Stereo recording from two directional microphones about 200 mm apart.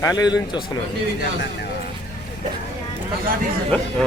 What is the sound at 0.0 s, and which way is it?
Speech, 20° left (ahead or behind).